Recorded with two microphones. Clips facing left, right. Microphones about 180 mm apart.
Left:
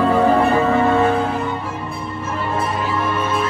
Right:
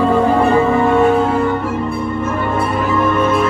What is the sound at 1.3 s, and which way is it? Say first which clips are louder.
Music: right 7 dB; 55° right (ahead or behind).